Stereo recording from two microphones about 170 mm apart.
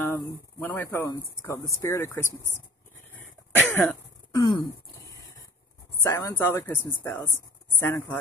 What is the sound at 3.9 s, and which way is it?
Throat clearing, 25° left (ahead or behind).